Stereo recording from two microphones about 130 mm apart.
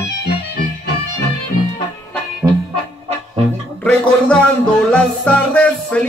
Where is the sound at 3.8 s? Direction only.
10° left (ahead or behind).